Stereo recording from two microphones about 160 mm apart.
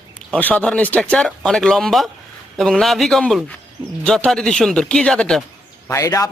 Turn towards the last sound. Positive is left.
turn(degrees=20)  # may be behind; listen again after turning